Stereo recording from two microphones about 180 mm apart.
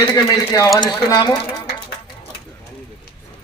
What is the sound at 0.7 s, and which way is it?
Speech, 25° left (ahead or behind).